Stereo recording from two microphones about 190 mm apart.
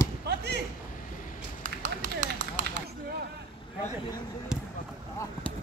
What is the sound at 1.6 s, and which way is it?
Run, 40° right (ahead or behind).